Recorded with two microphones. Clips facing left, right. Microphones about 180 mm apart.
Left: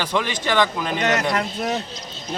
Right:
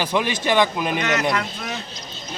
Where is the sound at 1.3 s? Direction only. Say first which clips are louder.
Left 4 dB; 40° left (ahead or behind).